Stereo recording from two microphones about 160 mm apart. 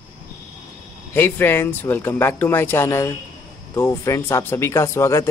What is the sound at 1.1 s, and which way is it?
Speech, 15° left (ahead or behind).